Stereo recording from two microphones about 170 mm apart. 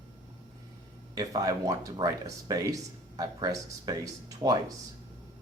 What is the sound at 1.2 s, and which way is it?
Speech, 20° right (ahead or behind).